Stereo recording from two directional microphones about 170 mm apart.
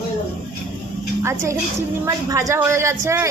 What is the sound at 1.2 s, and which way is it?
A woman's voice, 15° right (ahead or behind).